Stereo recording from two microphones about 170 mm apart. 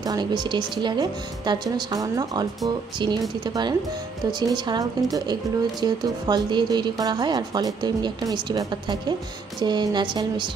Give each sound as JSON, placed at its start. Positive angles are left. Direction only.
{"t": 0.0, "sound": "speech", "side_deg": -25}